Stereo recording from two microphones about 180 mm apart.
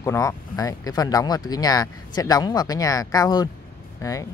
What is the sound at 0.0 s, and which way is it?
Speech, 15° left (ahead or behind).